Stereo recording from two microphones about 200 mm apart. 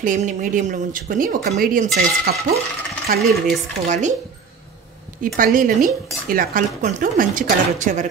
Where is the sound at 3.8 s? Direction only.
35° right (ahead or behind).